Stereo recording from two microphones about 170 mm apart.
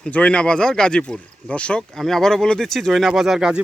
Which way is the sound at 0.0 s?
5° left (ahead or behind).